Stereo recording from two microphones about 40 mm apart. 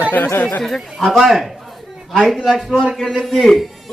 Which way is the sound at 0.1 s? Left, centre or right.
Left.